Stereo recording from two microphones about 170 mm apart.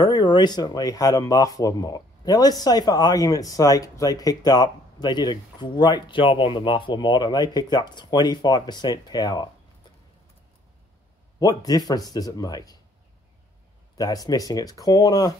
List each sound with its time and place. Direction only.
0.0 s speech: 25° left (ahead or behind)
11.3 s speech: 20° left (ahead or behind)
13.9 s speech: 20° left (ahead or behind)